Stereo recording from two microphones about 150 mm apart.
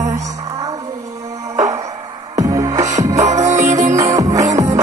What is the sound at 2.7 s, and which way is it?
Music, 50° right (ahead or behind).